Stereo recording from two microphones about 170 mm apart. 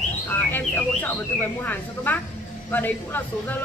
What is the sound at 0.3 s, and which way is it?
Speech, 10° left (ahead or behind).